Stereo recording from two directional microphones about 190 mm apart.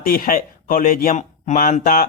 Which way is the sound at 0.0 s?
50° left (ahead or behind).